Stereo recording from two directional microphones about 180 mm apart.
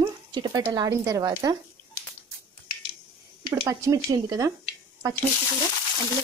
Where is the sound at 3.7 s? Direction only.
15° right (ahead or behind).